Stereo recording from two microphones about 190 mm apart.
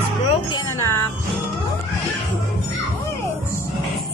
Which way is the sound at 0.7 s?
15° left (ahead or behind).